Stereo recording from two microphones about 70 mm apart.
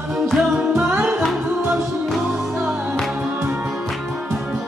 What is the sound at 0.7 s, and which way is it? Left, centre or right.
Music, right.